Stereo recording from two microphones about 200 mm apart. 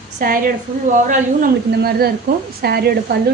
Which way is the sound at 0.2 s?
45° right (ahead or behind).